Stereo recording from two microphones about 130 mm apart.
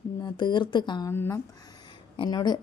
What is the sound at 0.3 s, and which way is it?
Speech, 35° left (ahead or behind).